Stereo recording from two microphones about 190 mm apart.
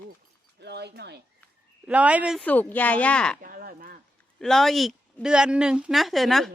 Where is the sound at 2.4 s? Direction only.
10° left (ahead or behind).